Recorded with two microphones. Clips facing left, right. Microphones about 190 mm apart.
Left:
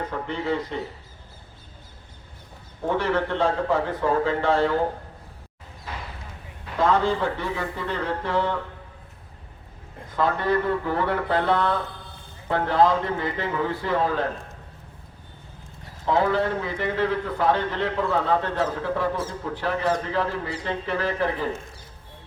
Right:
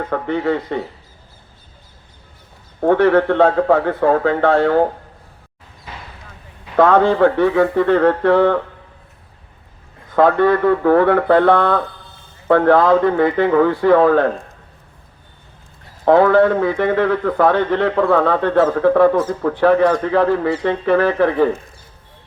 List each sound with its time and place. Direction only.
0.1 s speech: 60° right (ahead or behind)
2.8 s speech: 60° right (ahead or behind)
6.7 s speech: 60° right (ahead or behind)
10.2 s speech: 60° right (ahead or behind)
16.0 s speech: 60° right (ahead or behind)